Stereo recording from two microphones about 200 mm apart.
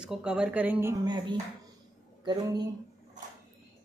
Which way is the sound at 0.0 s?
5° right (ahead or behind).